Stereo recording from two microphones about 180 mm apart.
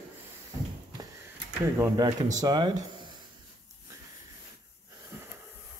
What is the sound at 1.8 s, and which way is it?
Speech, 20° right (ahead or behind).